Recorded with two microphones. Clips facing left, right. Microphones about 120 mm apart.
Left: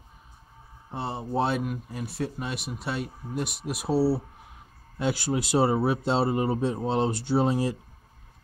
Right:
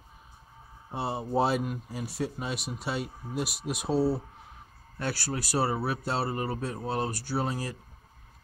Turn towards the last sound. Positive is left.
turn(degrees=25)  # may be behind; listen again after turning